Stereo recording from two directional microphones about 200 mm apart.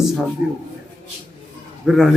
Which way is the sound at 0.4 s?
5° right (ahead or behind).